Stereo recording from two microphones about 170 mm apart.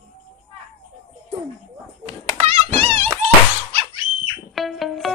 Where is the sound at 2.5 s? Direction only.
35° right (ahead or behind).